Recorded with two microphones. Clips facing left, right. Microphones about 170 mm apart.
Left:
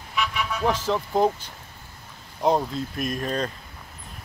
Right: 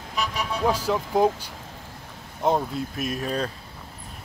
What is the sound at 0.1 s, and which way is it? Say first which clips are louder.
Vehicle: left 1 dB; 40° right (ahead or behind).